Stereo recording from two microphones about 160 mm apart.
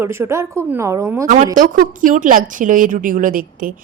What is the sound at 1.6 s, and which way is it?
A woman's voice, 55° right (ahead or behind).